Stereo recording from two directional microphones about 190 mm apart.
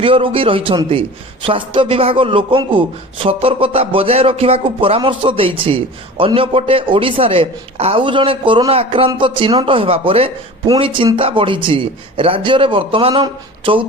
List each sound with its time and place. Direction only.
0.0 s a man's voice: 25° right (ahead or behind)